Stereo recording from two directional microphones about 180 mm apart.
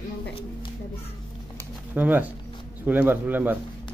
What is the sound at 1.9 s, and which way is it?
Speech, 10° right (ahead or behind).